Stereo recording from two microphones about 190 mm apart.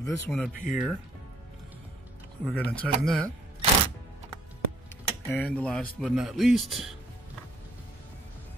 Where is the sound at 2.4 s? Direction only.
5° left (ahead or behind).